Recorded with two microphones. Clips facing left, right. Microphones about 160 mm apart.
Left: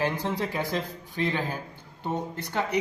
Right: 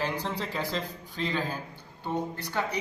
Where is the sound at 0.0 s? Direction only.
15° left (ahead or behind).